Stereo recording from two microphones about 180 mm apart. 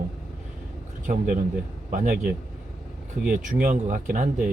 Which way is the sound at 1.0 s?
50° right (ahead or behind).